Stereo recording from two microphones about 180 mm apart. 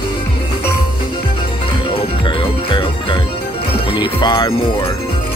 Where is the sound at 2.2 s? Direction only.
30° left (ahead or behind).